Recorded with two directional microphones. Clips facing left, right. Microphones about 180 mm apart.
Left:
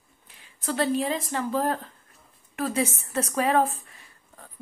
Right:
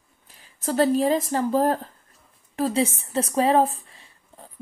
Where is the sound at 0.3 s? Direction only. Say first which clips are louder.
Right 4 dB; 40° right (ahead or behind).